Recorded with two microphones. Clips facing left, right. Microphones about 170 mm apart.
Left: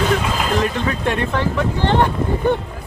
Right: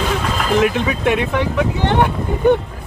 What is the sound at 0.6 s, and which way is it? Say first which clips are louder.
Speech: right 4 dB; 10° right (ahead or behind).